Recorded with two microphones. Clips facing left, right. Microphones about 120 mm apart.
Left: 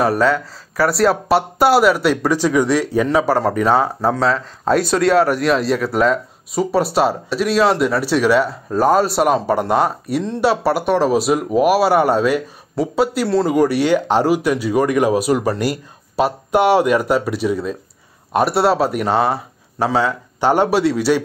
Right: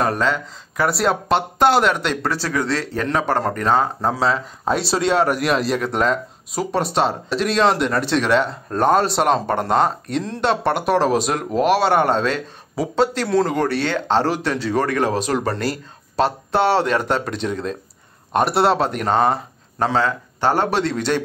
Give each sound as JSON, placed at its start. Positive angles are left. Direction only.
{"t": 0.0, "sound": "speech", "side_deg": 10}
{"t": 4.7, "sound": "speech", "side_deg": -30}
{"t": 5.1, "sound": "speech", "side_deg": 0}